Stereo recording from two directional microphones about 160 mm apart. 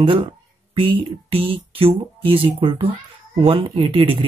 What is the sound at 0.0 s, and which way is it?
Speech, 35° right (ahead or behind).